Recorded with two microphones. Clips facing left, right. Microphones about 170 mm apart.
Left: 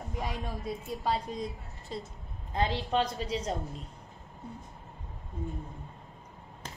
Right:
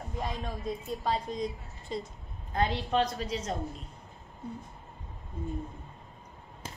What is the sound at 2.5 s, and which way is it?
A woman's voice, 30° left (ahead or behind).